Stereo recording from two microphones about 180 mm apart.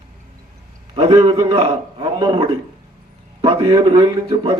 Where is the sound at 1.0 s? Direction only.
30° right (ahead or behind).